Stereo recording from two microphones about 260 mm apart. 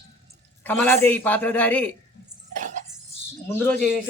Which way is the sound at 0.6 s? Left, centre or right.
Centre.